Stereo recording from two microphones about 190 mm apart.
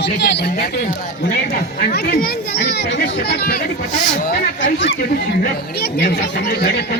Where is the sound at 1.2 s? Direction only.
50° left (ahead or behind).